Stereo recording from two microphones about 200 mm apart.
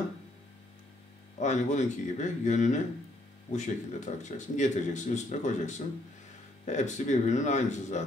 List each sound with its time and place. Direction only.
1.4 s speech: 35° left (ahead or behind)